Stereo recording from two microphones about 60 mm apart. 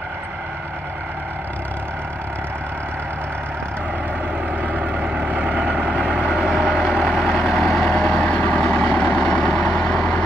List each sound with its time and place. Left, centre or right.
4.6 s vehicle: right
5.9 s vehicle: centre